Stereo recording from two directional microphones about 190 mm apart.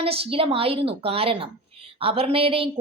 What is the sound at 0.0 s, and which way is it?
A woman's voice, 30° right (ahead or behind).